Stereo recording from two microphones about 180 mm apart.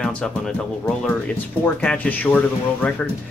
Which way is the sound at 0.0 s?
5° left (ahead or behind).